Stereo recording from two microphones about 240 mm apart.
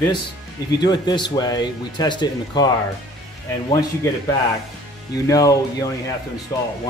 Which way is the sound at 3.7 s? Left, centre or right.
Centre.